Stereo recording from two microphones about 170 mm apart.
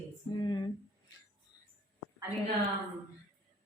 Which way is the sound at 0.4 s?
25° left (ahead or behind).